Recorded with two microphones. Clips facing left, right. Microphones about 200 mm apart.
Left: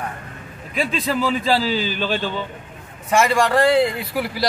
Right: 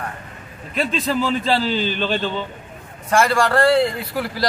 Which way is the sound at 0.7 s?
5° left (ahead or behind).